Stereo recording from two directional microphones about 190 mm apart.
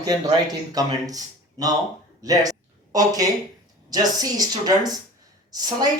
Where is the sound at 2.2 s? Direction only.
20° right (ahead or behind).